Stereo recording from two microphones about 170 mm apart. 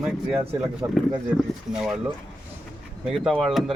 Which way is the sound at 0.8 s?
15° right (ahead or behind).